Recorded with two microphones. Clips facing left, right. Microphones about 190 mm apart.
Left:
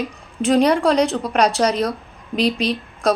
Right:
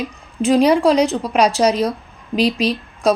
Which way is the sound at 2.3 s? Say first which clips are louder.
Right 2 dB; 35° right (ahead or behind).